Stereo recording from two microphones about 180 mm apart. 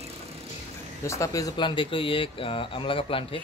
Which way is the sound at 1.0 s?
15° left (ahead or behind).